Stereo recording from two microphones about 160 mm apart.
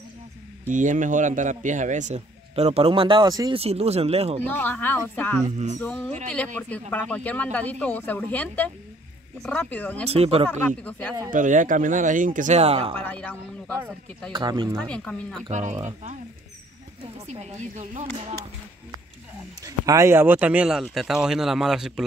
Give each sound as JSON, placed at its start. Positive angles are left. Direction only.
{"t": 0.7, "sound": "a man's voice", "side_deg": -50}
{"t": 3.5, "sound": "speech", "side_deg": -40}
{"t": 4.4, "sound": "speech", "side_deg": 10}
{"t": 10.0, "sound": "speech", "side_deg": -40}
{"t": 10.8, "sound": "speech", "side_deg": 10}
{"t": 11.3, "sound": "a man's voice", "side_deg": -55}
{"t": 12.9, "sound": "speech", "side_deg": 10}
{"t": 14.3, "sound": "speech", "side_deg": -30}
{"t": 14.8, "sound": "speech", "side_deg": 5}
{"t": 15.5, "sound": "a man's voice", "side_deg": -50}
{"t": 19.6, "sound": "speech", "side_deg": -20}